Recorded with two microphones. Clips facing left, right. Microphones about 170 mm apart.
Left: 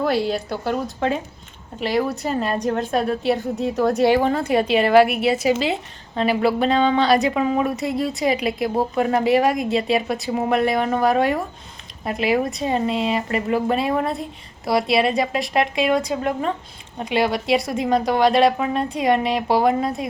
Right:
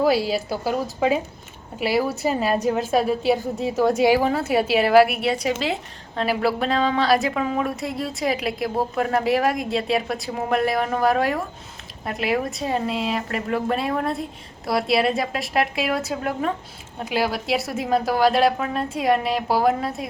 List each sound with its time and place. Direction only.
0.0 s a woman's voice: 5° right (ahead or behind)